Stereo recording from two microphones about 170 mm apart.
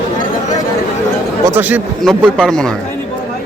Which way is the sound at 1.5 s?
10° right (ahead or behind).